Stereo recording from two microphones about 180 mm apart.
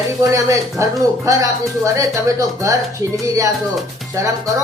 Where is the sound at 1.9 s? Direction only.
20° right (ahead or behind).